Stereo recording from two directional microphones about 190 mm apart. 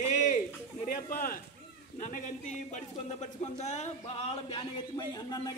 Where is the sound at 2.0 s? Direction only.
40° left (ahead or behind).